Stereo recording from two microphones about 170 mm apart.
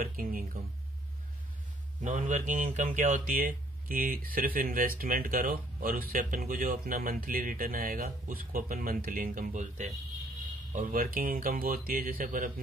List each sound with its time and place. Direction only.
0.0 s speech: 55° right (ahead or behind)
2.0 s speech: 50° right (ahead or behind)